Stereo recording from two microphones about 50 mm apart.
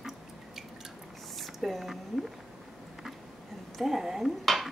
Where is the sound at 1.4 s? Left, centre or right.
Centre.